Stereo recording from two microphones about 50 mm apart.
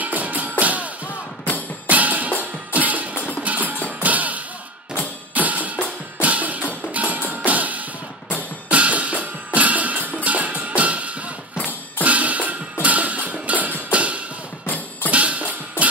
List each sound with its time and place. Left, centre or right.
0.0 s music: right
1.9 s music: right